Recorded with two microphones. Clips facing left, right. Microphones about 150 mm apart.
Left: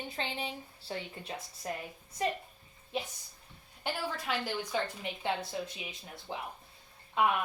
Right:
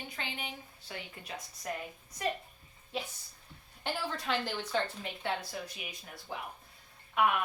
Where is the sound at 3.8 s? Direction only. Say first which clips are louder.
Even; 5° left (ahead or behind).